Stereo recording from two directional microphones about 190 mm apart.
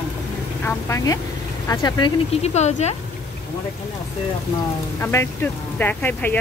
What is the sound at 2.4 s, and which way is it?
Speech, 35° left (ahead or behind).